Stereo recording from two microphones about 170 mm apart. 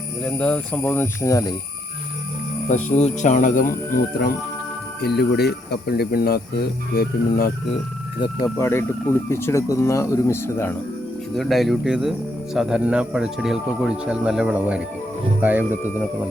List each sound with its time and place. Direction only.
0.3 s speech: 5° left (ahead or behind)
2.6 s speech: 45° left (ahead or behind)
4.9 s speech: 70° left (ahead or behind)
8.5 s speech: 15° left (ahead or behind)
11.3 s speech: centre (ahead or behind)